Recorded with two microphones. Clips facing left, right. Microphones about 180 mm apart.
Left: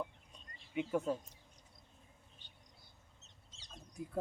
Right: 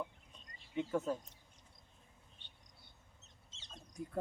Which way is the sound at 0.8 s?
10° left (ahead or behind).